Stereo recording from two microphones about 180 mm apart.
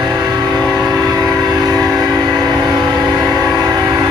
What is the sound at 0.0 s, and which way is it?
Vehicle, 20° right (ahead or behind).